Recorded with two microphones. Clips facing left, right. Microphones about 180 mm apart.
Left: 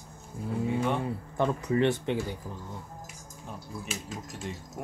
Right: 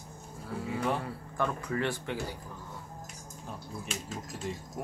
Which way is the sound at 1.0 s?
20° left (ahead or behind).